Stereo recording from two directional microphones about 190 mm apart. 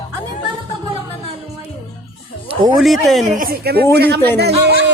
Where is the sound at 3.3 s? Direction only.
50° right (ahead or behind).